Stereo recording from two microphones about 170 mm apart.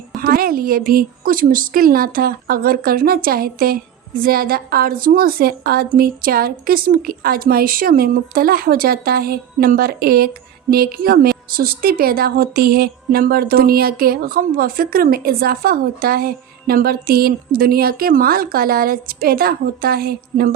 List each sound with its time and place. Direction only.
0.2 s a woman's voice: 60° right (ahead or behind)